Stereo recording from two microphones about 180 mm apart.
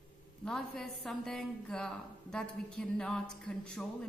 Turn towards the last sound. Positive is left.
turn(degrees=5)  # may be behind; listen again after turning